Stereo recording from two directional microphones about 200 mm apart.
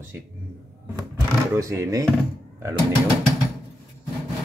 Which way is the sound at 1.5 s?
15° right (ahead or behind).